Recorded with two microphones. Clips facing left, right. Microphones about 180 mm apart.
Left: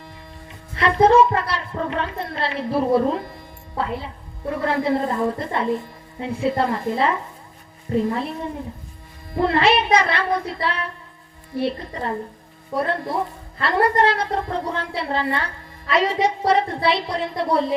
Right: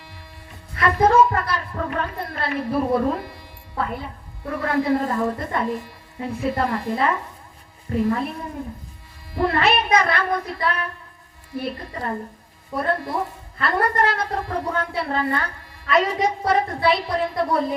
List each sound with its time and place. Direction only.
0.8 s a woman's voice: 25° left (ahead or behind)
4.6 s a woman's voice: 25° left (ahead or behind)
9.4 s a woman's voice: 30° left (ahead or behind)